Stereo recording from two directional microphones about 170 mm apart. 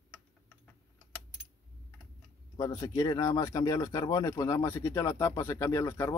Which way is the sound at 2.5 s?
25° left (ahead or behind).